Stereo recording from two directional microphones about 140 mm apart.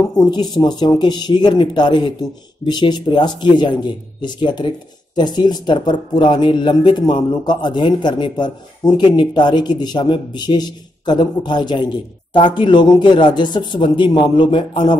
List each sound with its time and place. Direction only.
0.2 s a man's voice: 30° left (ahead or behind)